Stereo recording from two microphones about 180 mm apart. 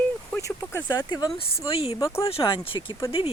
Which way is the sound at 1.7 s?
35° left (ahead or behind).